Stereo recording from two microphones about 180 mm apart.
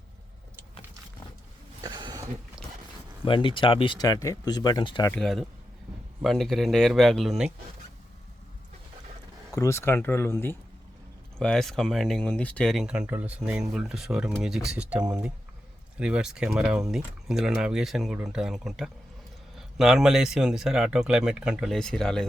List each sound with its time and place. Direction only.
1.8 s a sound: 25° right (ahead or behind)
3.2 s speech: 30° left (ahead or behind)
5.1 s speech: centre (ahead or behind)
9.6 s speech: 15° left (ahead or behind)